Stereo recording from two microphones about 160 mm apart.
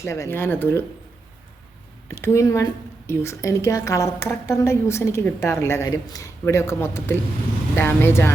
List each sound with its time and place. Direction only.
0.0 s a woman's voice: 15° left (ahead or behind)
2.0 s a woman's voice: 15° left (ahead or behind)